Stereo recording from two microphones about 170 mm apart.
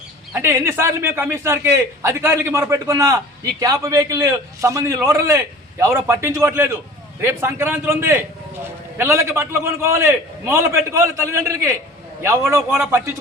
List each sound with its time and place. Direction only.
0.3 s a man's voice: 15° right (ahead or behind)